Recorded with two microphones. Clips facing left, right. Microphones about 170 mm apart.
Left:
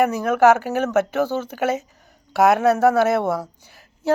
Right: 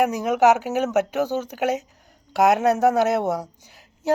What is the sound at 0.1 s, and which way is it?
Speech, 15° right (ahead or behind).